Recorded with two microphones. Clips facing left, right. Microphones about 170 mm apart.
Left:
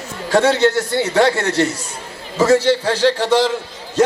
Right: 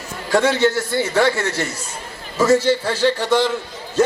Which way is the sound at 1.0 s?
75° left (ahead or behind).